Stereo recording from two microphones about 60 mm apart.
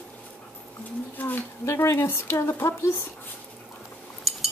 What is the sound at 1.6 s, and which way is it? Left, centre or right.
Speech, left.